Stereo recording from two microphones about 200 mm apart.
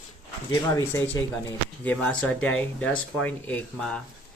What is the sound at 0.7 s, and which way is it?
Speech, 10° left (ahead or behind).